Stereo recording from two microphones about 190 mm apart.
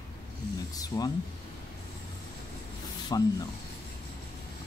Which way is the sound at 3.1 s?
20° left (ahead or behind).